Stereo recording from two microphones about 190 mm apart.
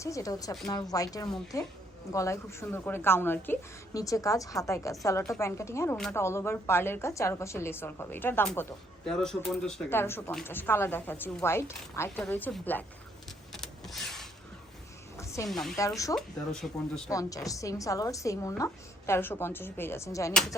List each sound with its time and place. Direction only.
0.0 s a woman's voice: 15° left (ahead or behind)
13.5 s vehicle: centre (ahead or behind)
15.2 s music: 15° left (ahead or behind)
15.4 s speech: centre (ahead or behind)
17.1 s a woman's voice: 15° left (ahead or behind)